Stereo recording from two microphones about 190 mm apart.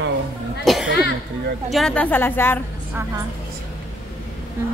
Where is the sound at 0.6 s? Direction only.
Centre (ahead or behind).